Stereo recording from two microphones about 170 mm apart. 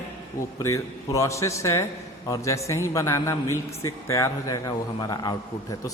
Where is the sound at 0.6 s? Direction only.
20° left (ahead or behind).